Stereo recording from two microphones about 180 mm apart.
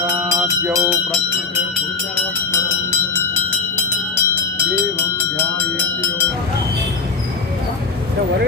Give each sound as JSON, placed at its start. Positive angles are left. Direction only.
{"t": 0.0, "sound": "music", "side_deg": -15}
{"t": 3.8, "sound": "music", "side_deg": 10}
{"t": 5.4, "sound": "a sound", "side_deg": 10}